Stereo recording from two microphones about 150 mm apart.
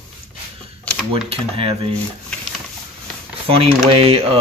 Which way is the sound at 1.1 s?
35° right (ahead or behind).